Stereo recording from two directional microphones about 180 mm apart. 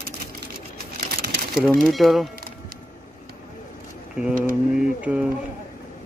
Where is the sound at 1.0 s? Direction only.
60° right (ahead or behind).